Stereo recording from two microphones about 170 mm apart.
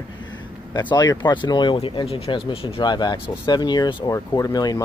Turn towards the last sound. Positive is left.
turn(degrees=25)  # may be behind; listen again after turning